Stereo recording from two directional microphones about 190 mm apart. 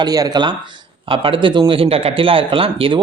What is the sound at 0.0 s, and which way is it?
Speech, 20° right (ahead or behind).